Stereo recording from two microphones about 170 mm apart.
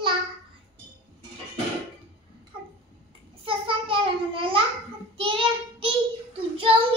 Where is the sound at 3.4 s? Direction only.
30° right (ahead or behind).